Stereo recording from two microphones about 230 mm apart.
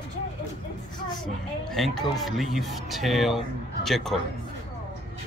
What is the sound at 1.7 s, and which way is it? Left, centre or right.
Speech, centre.